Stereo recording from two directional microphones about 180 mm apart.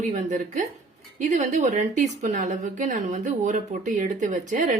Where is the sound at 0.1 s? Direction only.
45° right (ahead or behind).